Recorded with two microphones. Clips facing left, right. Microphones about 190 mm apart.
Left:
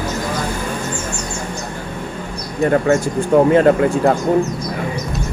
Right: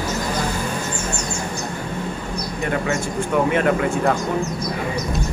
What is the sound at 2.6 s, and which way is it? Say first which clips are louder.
Speech: left 9 dB; 40° left (ahead or behind).